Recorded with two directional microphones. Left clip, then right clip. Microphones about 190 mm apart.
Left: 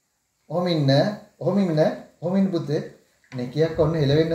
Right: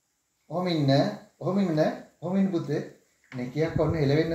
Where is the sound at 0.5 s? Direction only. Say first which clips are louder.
Left 4 dB; 5° left (ahead or behind).